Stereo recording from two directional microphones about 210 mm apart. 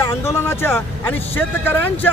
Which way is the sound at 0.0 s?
15° left (ahead or behind).